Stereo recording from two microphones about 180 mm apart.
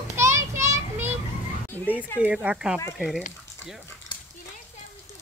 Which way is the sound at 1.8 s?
5° right (ahead or behind).